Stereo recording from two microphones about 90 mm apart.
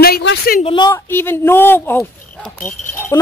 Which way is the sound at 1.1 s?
25° left (ahead or behind).